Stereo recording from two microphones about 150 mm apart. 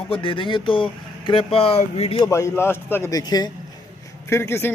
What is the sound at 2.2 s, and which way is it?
A man's voice, 20° left (ahead or behind).